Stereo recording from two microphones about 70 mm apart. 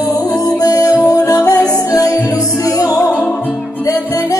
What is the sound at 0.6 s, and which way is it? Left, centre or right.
Music, left.